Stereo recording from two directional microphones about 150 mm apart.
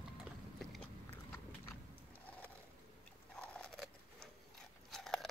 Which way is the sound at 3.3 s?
5° left (ahead or behind).